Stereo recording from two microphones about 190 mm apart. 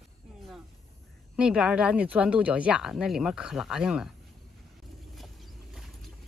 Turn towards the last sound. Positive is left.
turn(degrees=0)  # may be behind; listen again after turning